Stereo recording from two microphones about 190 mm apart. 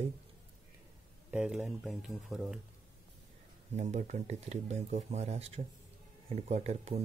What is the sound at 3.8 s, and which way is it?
Speech, 40° right (ahead or behind).